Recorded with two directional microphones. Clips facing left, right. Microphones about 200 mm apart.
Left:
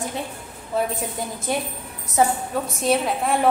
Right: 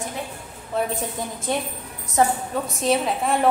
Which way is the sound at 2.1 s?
Centre (ahead or behind).